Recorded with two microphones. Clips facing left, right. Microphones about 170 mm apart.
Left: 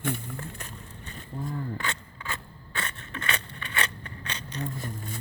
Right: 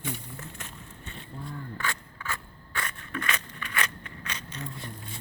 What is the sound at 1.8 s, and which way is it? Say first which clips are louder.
Crushing: even; 20° left (ahead or behind).